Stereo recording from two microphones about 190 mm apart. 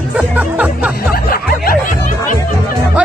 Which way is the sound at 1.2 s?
50° left (ahead or behind).